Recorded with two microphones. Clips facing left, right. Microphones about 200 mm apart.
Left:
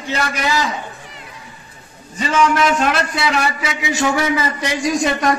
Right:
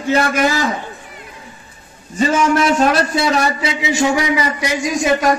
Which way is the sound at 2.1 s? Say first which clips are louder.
Right 2 dB; 35° right (ahead or behind).